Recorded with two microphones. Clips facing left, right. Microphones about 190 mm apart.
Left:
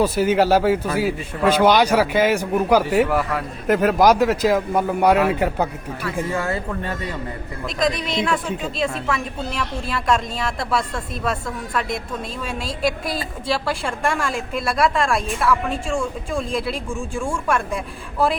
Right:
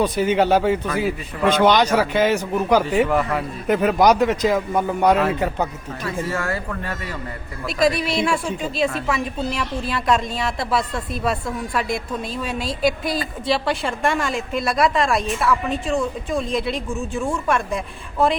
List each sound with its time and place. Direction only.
0.0 s a woman's voice: 5° left (ahead or behind); by 7.1 s 20° left (ahead or behind)
7.8 s a woman's voice: 5° right (ahead or behind)